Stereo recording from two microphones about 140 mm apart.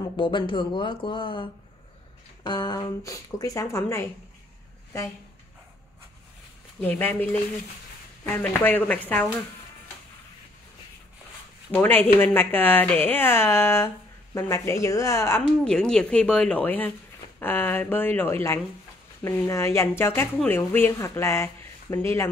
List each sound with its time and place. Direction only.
0.2 s speech: 35° left (ahead or behind)
6.8 s speech: 15° left (ahead or behind)
8.3 s speech: 15° left (ahead or behind)
11.7 s speech: 15° left (ahead or behind)
15.6 s speech: 5° left (ahead or behind)